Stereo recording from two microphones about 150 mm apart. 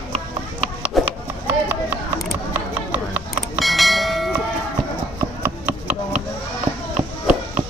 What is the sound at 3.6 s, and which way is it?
Bell, centre (ahead or behind).